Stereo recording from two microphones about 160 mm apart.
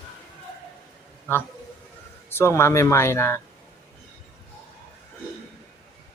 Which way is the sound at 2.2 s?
15° left (ahead or behind).